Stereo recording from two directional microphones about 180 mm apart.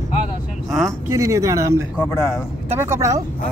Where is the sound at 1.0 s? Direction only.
15° right (ahead or behind).